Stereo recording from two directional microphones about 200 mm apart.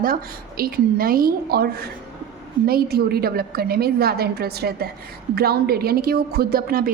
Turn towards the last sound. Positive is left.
turn(degrees=-45)  # may be behind; listen again after turning